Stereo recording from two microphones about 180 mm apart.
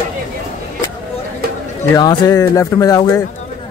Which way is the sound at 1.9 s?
20° left (ahead or behind).